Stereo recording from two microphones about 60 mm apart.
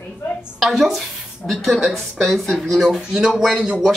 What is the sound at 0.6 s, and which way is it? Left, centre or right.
A woman's voice, centre.